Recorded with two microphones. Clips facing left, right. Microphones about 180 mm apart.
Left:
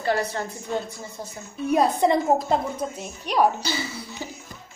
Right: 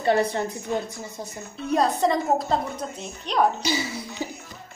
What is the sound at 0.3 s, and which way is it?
Speech, 20° right (ahead or behind).